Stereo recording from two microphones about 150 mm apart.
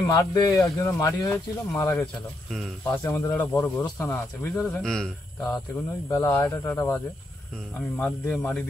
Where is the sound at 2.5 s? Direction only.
Centre (ahead or behind).